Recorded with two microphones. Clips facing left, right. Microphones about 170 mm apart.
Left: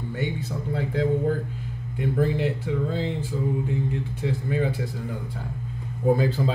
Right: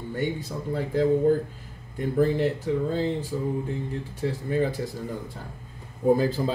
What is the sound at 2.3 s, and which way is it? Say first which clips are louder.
A man's voice: right 1 dB; 40° right (ahead or behind).